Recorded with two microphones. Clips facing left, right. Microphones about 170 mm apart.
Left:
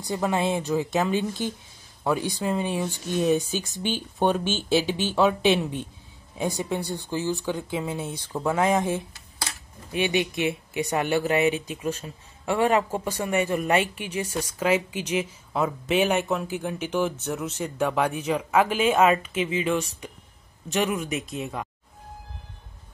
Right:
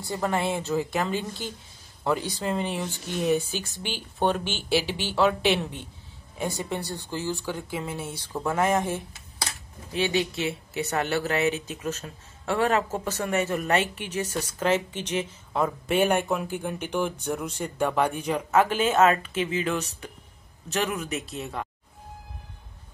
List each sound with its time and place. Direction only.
0.0 s speech: 15° left (ahead or behind)
21.4 s speech: 10° left (ahead or behind)